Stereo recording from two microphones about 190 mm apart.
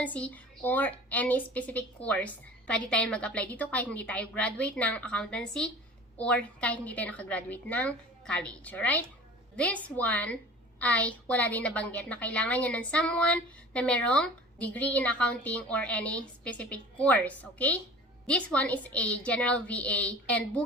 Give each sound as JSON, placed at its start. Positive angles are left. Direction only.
{"t": 0.0, "sound": "a woman's voice", "side_deg": 5}